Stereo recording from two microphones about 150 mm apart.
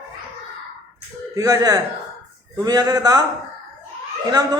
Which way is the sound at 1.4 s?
20° right (ahead or behind).